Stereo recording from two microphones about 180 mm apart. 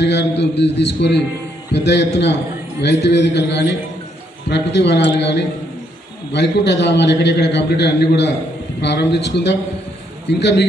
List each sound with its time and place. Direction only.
0.0 s a man's voice: 75° left (ahead or behind)